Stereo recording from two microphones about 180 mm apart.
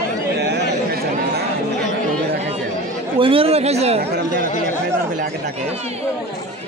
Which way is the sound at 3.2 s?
30° right (ahead or behind).